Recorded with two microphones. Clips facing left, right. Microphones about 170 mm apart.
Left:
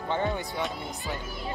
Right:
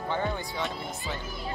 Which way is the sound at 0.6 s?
Centre (ahead or behind).